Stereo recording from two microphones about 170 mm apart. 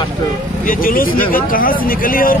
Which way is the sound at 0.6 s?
55° left (ahead or behind).